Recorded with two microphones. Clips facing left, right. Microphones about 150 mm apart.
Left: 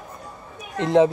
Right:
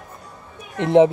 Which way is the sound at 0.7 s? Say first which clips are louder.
Right 3 dB; 20° right (ahead or behind).